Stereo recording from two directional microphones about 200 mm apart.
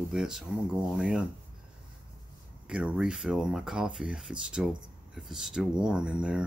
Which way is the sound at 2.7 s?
5° right (ahead or behind).